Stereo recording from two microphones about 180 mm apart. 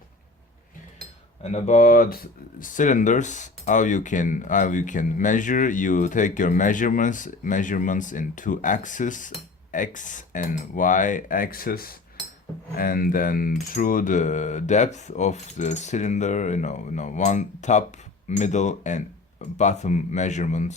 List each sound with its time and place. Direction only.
1.4 s speech: 35° left (ahead or behind)